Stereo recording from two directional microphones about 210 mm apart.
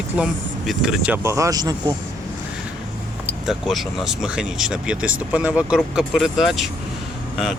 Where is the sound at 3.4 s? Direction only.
Centre (ahead or behind).